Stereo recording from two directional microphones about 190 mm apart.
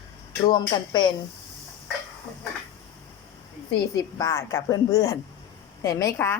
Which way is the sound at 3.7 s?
20° left (ahead or behind).